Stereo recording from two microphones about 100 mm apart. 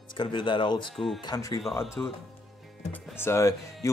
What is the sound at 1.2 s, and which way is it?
Speech, 35° left (ahead or behind).